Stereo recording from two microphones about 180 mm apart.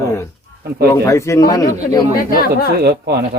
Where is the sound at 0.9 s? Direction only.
15° left (ahead or behind).